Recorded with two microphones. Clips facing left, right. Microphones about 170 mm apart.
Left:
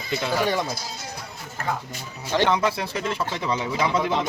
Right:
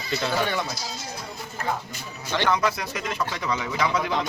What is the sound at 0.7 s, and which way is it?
Speech, 55° left (ahead or behind).